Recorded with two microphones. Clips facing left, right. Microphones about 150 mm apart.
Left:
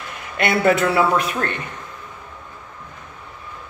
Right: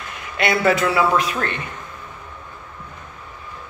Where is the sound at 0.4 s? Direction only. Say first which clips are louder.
Left 1 dB; 55° left (ahead or behind).